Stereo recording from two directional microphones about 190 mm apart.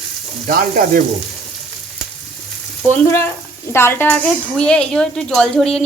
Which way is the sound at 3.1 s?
10° left (ahead or behind).